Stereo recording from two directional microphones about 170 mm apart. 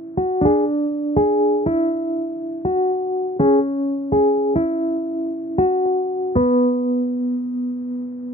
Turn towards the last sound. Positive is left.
turn(degrees=40)  # may be behind; listen again after turning